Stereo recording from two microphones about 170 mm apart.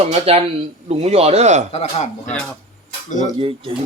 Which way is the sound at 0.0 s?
35° right (ahead or behind).